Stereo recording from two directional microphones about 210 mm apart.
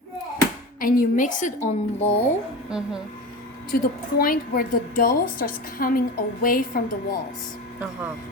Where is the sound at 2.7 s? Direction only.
5° right (ahead or behind).